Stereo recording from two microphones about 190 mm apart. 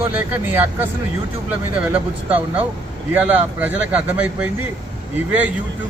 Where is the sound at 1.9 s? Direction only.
10° right (ahead or behind).